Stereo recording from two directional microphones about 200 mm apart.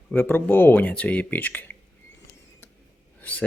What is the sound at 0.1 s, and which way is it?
Speech, 10° left (ahead or behind).